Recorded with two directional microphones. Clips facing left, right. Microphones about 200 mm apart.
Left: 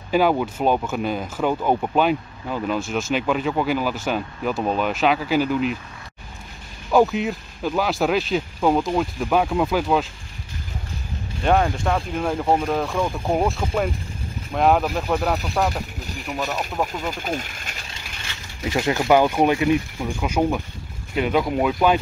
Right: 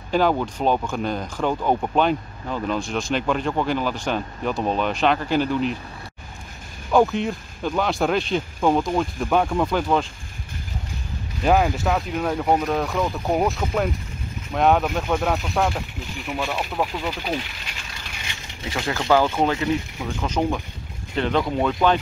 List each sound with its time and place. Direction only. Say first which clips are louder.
0.1 s speech: left 1 dB; 10° left (ahead or behind)
6.9 s speech: left 1 dB; 5° left (ahead or behind)
11.4 s speech: even; 5° right (ahead or behind)
12.2 s speech: left 1 dB; 5° left (ahead or behind)
17.1 s speech: even; 45° left (ahead or behind)
18.7 s speech: left 3 dB; 20° left (ahead or behind)